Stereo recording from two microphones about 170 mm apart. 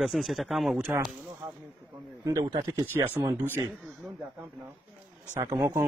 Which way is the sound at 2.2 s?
20° right (ahead or behind).